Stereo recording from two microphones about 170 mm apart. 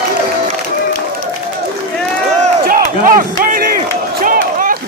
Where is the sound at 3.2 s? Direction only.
55° right (ahead or behind).